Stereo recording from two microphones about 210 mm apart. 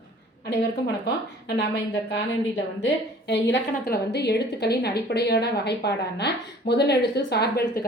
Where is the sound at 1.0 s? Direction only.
55° left (ahead or behind).